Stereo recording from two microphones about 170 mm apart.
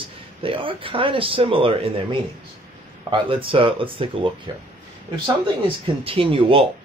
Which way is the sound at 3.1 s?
30° right (ahead or behind).